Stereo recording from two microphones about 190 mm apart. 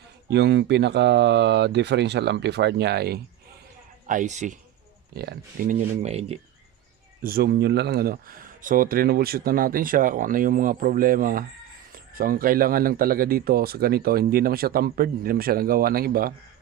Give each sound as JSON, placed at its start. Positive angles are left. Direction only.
{"t": 0.3, "sound": "speech", "side_deg": -65}
{"t": 4.0, "sound": "speech", "side_deg": -40}
{"t": 5.1, "sound": "speech", "side_deg": -55}
{"t": 5.9, "sound": "speech", "side_deg": -35}
{"t": 7.2, "sound": "a man's voice", "side_deg": -55}